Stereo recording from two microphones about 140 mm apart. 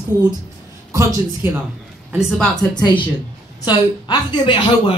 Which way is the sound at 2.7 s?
35° left (ahead or behind).